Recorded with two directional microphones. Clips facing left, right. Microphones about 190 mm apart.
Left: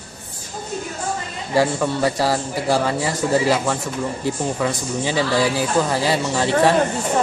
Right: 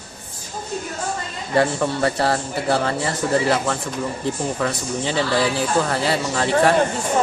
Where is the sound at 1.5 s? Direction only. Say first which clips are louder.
Left 1 dB; 10° left (ahead or behind).